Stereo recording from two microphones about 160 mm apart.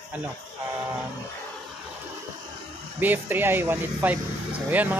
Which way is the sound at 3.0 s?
10° right (ahead or behind).